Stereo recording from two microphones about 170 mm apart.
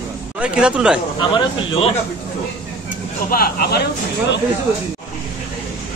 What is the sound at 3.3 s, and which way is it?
Speech, 65° left (ahead or behind).